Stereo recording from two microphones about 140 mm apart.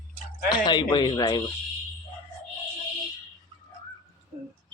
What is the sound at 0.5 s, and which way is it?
Speech, 30° left (ahead or behind).